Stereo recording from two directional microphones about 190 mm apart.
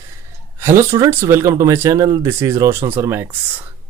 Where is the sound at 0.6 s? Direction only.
15° right (ahead or behind).